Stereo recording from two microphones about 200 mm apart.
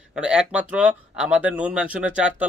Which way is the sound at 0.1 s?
5° right (ahead or behind).